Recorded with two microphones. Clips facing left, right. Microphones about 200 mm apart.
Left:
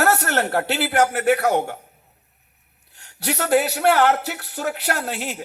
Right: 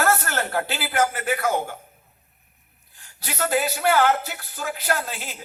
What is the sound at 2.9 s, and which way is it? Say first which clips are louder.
A man's voice: left 5 dB; 70° left (ahead or behind).